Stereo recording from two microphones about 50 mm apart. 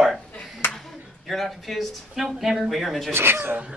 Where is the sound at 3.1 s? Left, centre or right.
Right.